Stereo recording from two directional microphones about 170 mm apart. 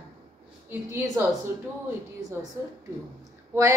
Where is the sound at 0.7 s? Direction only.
10° right (ahead or behind).